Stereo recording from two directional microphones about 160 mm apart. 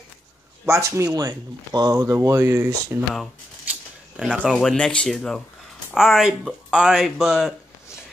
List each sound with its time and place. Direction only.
0.7 s speech: 15° right (ahead or behind)
4.4 s speech: centre (ahead or behind)